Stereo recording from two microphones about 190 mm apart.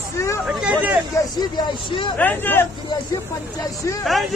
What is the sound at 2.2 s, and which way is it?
Speech, 10° left (ahead or behind).